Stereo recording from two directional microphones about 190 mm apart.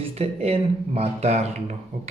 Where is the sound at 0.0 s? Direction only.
35° right (ahead or behind).